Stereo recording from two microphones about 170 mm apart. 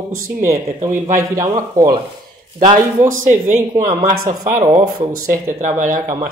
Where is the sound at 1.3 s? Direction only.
20° right (ahead or behind).